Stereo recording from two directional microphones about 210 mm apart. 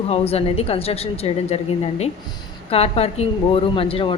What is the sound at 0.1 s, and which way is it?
Speech, 30° left (ahead or behind).